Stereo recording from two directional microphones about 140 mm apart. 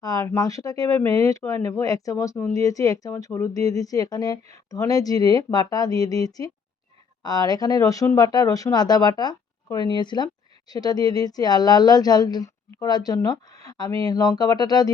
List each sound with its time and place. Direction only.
0.0 s speech: 25° left (ahead or behind)